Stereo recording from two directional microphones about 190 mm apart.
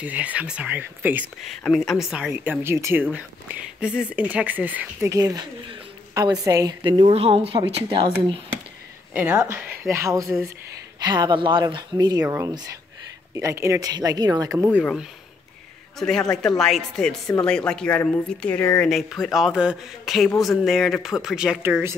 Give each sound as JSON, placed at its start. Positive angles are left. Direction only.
{"t": 0.0, "sound": "speech", "side_deg": -5}
{"t": 1.6, "sound": "speech", "side_deg": 0}
{"t": 9.1, "sound": "speech", "side_deg": -10}
{"t": 16.0, "sound": "speech", "side_deg": 5}
{"t": 18.9, "sound": "speech", "side_deg": 0}